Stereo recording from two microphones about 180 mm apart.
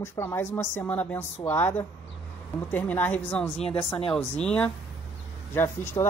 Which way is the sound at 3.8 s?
30° left (ahead or behind).